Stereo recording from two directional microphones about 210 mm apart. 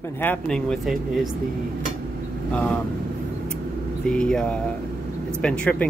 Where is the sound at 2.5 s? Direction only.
5° left (ahead or behind).